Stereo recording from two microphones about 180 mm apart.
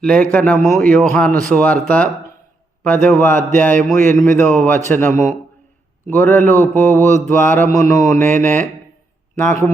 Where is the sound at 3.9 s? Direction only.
45° right (ahead or behind).